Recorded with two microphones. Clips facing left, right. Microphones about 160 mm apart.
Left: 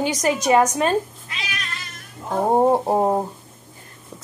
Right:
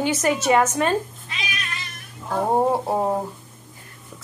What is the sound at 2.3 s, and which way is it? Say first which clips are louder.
Speech: left 3 dB; 20° left (ahead or behind).